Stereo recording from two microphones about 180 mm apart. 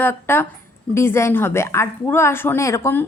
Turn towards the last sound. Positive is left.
turn(degrees=15)  # may be behind; listen again after turning